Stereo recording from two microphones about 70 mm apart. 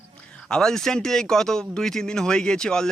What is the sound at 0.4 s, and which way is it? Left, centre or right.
Speech, centre.